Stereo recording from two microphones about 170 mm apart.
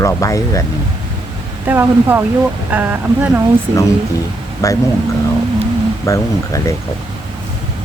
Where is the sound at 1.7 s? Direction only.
10° right (ahead or behind).